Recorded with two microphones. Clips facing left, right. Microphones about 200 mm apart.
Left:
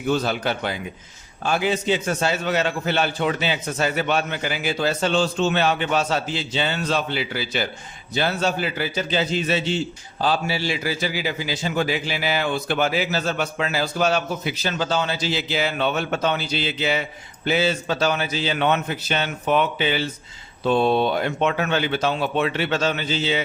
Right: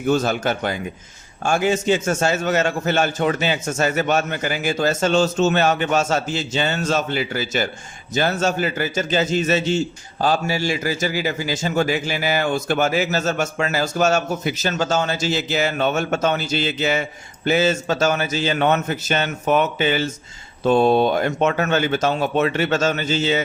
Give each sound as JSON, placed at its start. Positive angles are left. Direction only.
{"t": 0.0, "sound": "a man's voice", "side_deg": -45}